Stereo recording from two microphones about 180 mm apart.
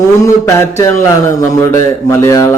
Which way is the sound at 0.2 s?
15° left (ahead or behind).